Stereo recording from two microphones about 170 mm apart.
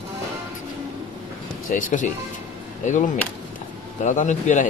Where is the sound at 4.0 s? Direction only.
45° left (ahead or behind).